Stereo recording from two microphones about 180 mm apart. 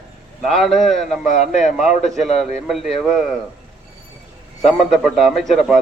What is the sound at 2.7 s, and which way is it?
Speech, centre (ahead or behind).